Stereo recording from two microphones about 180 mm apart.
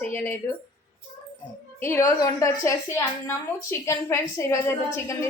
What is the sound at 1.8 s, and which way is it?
A woman's voice, 15° left (ahead or behind).